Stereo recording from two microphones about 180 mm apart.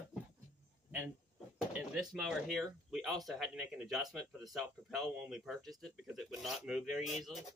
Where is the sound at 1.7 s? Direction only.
5° right (ahead or behind).